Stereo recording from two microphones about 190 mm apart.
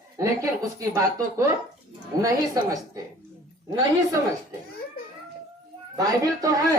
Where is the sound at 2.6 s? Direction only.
15° right (ahead or behind).